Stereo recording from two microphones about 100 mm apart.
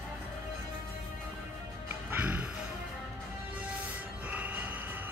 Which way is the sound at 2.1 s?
15° right (ahead or behind).